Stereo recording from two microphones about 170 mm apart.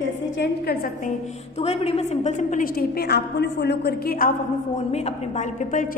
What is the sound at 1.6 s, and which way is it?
A woman's voice, 35° left (ahead or behind).